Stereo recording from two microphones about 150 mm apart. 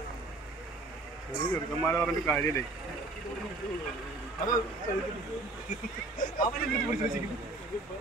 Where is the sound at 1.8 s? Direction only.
10° left (ahead or behind).